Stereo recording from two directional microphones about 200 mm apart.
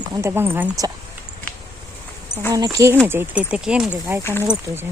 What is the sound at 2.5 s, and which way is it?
Speech, 15° right (ahead or behind).